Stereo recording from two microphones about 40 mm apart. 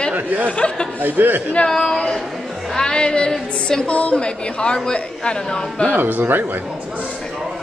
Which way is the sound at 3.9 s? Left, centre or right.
Left.